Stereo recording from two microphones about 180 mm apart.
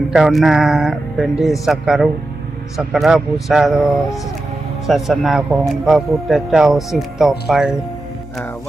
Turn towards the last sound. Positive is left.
turn(degrees=0)  # may be behind; listen again after turning